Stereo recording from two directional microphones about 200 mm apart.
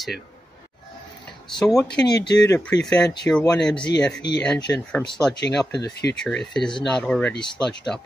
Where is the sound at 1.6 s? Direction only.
5° left (ahead or behind).